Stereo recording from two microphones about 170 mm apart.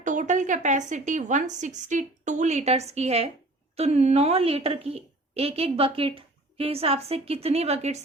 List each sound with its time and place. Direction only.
0.0 s a woman's voice: 50° right (ahead or behind)